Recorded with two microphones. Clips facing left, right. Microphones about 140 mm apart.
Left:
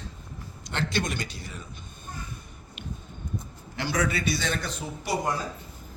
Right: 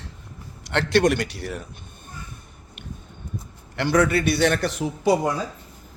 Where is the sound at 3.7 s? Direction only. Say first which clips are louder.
Right 8 dB; 60° right (ahead or behind); by 4.8 s 75° right (ahead or behind).